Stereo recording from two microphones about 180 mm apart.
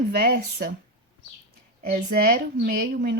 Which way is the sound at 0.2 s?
55° right (ahead or behind).